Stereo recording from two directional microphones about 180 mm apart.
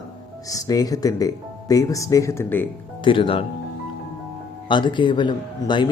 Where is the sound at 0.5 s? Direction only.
20° left (ahead or behind).